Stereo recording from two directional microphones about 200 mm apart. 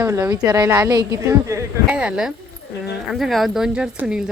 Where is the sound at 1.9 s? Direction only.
5° right (ahead or behind).